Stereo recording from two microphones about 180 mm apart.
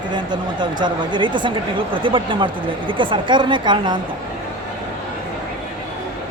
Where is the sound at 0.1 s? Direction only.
25° right (ahead or behind).